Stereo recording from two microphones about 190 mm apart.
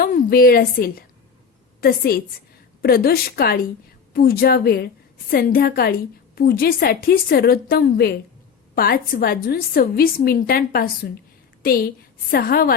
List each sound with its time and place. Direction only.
0.0 s a woman's voice: 50° left (ahead or behind)